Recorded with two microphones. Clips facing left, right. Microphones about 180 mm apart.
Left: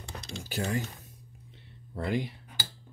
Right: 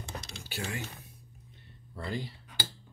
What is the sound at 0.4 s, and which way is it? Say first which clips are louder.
Speech: left 8 dB; 40° left (ahead or behind).